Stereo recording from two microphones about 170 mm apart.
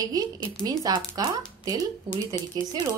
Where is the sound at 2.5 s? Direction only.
25° right (ahead or behind).